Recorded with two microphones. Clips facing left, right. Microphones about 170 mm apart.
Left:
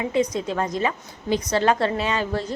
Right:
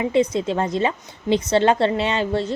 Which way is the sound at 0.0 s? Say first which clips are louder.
Right 3 dB; 30° right (ahead or behind).